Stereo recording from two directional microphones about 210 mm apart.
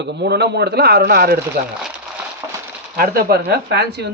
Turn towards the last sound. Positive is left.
turn(degrees=-50)  # may be behind; listen again after turning